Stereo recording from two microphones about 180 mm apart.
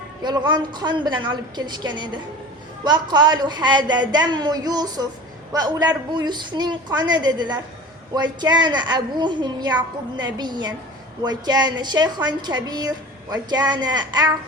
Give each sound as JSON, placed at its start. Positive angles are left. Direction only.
{"t": 0.2, "sound": "a woman's voice", "side_deg": -25}